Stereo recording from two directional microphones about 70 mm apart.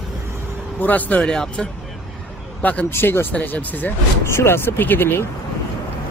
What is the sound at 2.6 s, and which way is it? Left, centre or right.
Speech, left.